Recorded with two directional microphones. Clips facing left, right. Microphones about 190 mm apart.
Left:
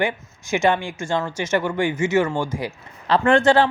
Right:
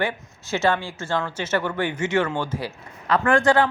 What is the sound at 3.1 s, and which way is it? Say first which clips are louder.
Speech: left 3 dB; 25° left (ahead or behind).